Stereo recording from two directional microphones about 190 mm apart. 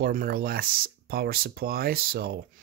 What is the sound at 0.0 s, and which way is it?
Speech, 50° right (ahead or behind).